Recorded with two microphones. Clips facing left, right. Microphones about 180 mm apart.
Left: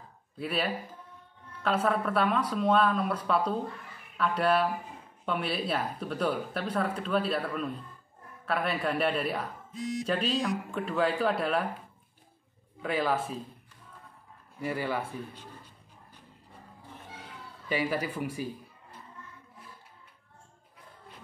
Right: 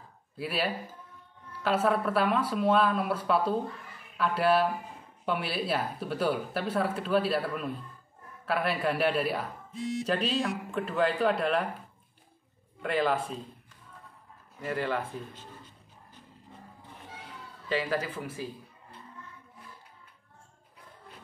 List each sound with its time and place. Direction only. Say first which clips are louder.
0.4 s speech: even; centre (ahead or behind)
12.8 s speech: right 1 dB; centre (ahead or behind)
14.6 s speech: even; 10° left (ahead or behind)
17.6 s speech: even; 10° left (ahead or behind)